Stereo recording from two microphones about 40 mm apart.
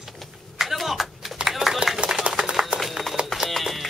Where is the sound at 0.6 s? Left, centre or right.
Centre.